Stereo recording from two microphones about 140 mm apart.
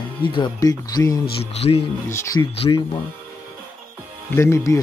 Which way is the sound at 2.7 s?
30° left (ahead or behind).